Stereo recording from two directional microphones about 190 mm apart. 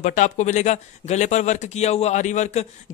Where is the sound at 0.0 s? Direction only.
40° left (ahead or behind).